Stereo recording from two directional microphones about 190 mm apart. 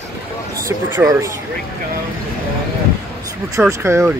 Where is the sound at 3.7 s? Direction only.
15° right (ahead or behind).